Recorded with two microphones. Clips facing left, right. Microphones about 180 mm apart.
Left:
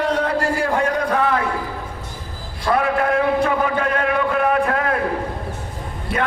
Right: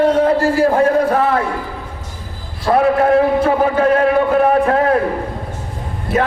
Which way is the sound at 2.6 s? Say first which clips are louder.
Right 6 dB; 35° right (ahead or behind).